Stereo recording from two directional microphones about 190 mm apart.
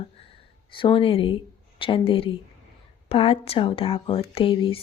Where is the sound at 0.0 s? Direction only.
30° left (ahead or behind).